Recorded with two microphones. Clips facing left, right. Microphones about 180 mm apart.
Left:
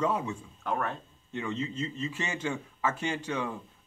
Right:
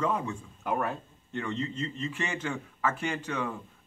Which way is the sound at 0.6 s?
10° right (ahead or behind).